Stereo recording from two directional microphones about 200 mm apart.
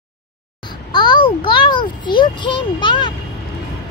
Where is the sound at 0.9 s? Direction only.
20° left (ahead or behind).